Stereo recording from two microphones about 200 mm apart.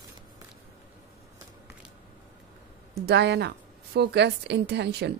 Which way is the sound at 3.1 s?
55° right (ahead or behind).